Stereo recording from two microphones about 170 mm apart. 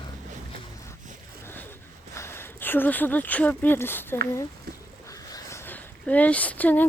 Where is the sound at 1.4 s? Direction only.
10° left (ahead or behind).